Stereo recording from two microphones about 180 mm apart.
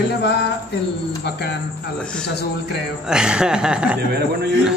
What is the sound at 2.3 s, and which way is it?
Speech, 65° left (ahead or behind).